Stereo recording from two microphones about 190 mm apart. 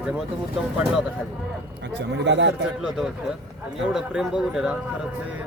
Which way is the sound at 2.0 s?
65° right (ahead or behind).